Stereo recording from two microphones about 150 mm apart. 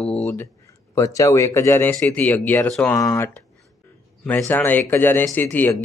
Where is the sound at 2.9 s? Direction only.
20° left (ahead or behind).